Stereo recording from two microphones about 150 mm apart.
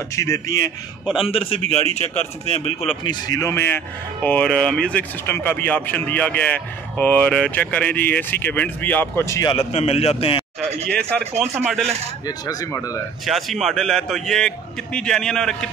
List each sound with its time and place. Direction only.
0.1 s speech: 20° left (ahead or behind)
1.0 s a man's voice: centre (ahead or behind)
1.3 s a man's voice: 40° left (ahead or behind)
3.0 s speech: 25° left (ahead or behind)
9.5 s a man's voice: 45° left (ahead or behind)
10.9 s speech: 5° left (ahead or behind)
12.3 s speech: 25° left (ahead or behind)
13.2 s a man's voice: centre (ahead or behind)